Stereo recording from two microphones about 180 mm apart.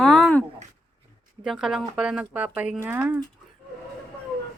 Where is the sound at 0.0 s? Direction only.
5° left (ahead or behind).